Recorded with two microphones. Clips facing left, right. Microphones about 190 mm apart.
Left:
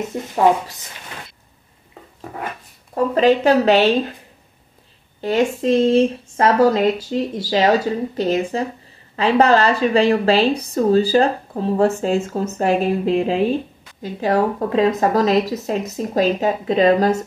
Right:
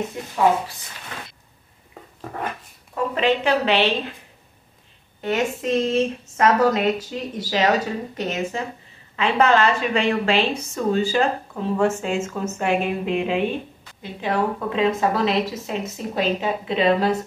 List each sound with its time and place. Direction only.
2.9 s a woman's voice: 40° left (ahead or behind)
5.2 s a woman's voice: 30° left (ahead or behind)